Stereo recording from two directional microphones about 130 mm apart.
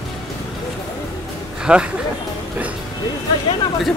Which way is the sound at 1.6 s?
10° right (ahead or behind).